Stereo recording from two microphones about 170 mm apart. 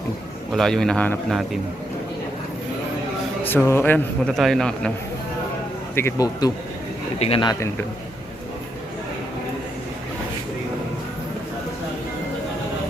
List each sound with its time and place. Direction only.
0.5 s a man's voice: centre (ahead or behind)
3.4 s a man's voice: 10° left (ahead or behind)
5.9 s a man's voice: 15° left (ahead or behind)
7.2 s speech: 35° left (ahead or behind)